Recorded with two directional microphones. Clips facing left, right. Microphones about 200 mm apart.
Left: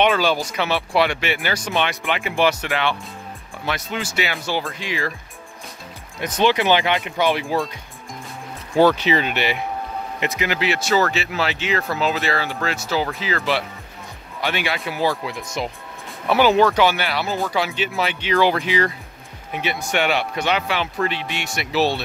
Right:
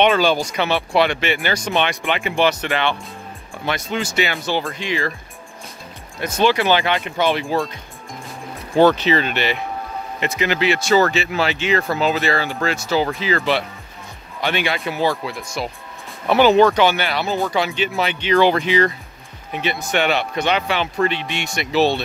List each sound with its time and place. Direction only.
0.0 s speech: 5° left (ahead or behind)
6.2 s speech: 20° left (ahead or behind)
8.8 s speech: 15° left (ahead or behind)
15.2 s speech: 15° left (ahead or behind)
16.3 s speech: 5° left (ahead or behind)